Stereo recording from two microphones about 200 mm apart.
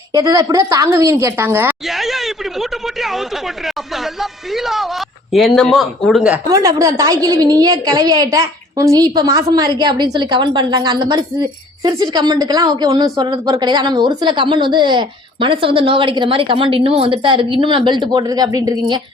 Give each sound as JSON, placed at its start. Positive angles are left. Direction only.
{"t": 0.1, "sound": "a woman's voice", "side_deg": -15}
{"t": 1.9, "sound": "a man's voice", "side_deg": 0}
{"t": 6.5, "sound": "a woman's voice", "side_deg": -15}